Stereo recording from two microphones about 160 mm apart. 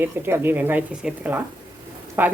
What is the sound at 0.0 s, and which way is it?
Speech, 15° right (ahead or behind).